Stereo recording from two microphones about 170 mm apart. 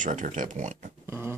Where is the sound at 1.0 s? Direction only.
15° right (ahead or behind).